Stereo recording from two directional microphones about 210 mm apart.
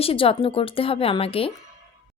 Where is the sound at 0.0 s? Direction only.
25° left (ahead or behind).